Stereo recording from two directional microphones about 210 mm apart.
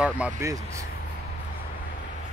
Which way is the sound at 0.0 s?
5° right (ahead or behind).